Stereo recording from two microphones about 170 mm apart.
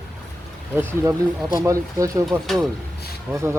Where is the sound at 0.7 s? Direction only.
15° right (ahead or behind).